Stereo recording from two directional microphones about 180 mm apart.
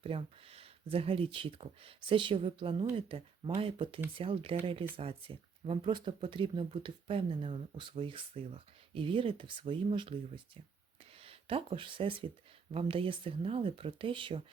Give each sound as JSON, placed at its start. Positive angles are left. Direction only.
{"t": 0.0, "sound": "speech", "side_deg": -30}